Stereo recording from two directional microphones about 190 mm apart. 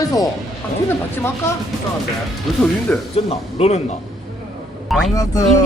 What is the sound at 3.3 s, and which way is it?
Speech, 35° left (ahead or behind).